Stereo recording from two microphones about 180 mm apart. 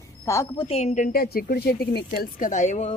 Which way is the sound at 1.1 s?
60° left (ahead or behind).